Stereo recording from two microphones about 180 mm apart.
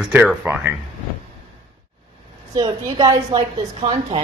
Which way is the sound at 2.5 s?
20° right (ahead or behind).